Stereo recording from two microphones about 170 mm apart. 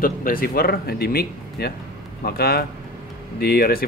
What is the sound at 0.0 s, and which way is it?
Speech, 55° left (ahead or behind).